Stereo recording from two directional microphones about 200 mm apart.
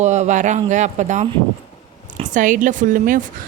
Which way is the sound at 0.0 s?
35° right (ahead or behind).